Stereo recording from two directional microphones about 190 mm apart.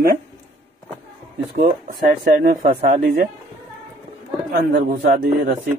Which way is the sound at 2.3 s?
40° right (ahead or behind).